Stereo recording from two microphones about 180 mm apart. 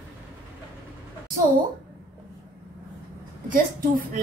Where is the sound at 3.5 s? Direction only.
50° right (ahead or behind).